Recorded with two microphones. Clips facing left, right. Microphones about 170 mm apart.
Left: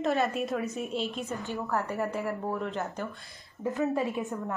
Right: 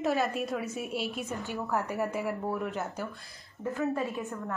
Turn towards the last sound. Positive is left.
turn(degrees=20)  # may be behind; listen again after turning